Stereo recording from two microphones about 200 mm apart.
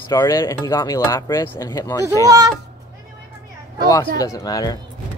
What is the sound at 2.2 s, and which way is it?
Speech, 15° right (ahead or behind).